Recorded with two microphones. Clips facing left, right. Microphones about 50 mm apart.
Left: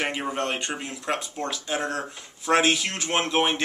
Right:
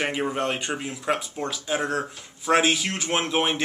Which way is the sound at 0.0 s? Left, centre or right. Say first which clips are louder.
Right 2 dB; centre.